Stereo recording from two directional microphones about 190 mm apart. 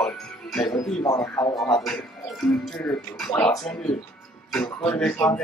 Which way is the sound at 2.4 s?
Centre (ahead or behind).